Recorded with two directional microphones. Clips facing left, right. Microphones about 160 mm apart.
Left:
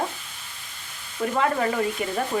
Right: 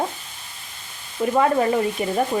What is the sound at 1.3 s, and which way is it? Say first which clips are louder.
Speech: right 5 dB; 25° right (ahead or behind).